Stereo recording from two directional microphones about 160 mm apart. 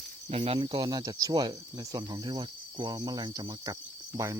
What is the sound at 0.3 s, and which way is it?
Speech, 40° right (ahead or behind).